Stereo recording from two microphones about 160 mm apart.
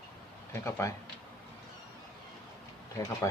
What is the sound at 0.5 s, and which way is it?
Speech, 15° left (ahead or behind).